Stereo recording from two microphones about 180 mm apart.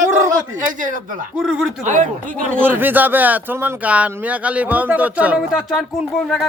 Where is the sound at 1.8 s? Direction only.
45° right (ahead or behind).